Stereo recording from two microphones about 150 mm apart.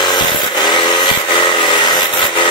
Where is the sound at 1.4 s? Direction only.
30° left (ahead or behind).